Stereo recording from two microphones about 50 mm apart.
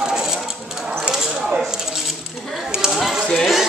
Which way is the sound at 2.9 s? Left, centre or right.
Centre.